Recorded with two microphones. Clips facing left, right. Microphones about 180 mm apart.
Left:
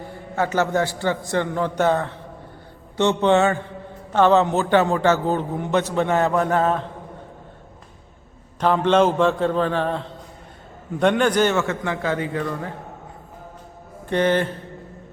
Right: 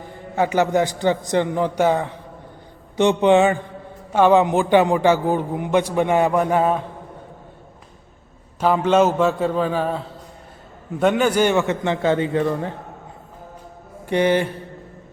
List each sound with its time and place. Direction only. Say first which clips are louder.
0.3 s a man's voice: right 3 dB; 15° right (ahead or behind)
8.6 s a man's voice: right 1 dB; 5° right (ahead or behind); by 12.7 s 25° right (ahead or behind)
14.1 s a man's voice: right 1 dB; 10° right (ahead or behind)